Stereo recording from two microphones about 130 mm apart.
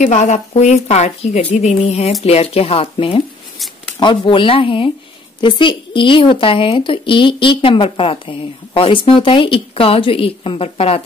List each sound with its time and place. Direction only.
0.0 s speech: 65° left (ahead or behind)